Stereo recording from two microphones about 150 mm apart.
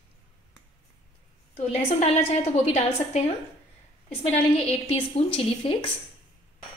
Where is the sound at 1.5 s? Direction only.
45° left (ahead or behind).